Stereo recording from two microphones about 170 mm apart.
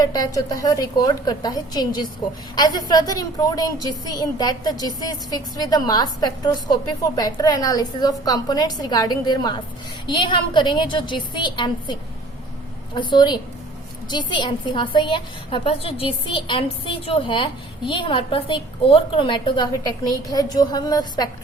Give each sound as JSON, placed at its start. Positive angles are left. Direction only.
{"t": 0.0, "sound": "a woman's voice", "side_deg": 20}